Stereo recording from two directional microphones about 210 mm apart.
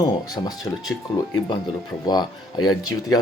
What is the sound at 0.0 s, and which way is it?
Speech, 15° left (ahead or behind).